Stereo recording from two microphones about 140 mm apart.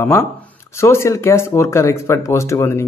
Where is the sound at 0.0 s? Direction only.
15° left (ahead or behind).